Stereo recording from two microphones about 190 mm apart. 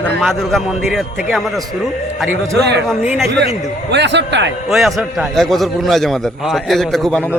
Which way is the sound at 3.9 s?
65° right (ahead or behind).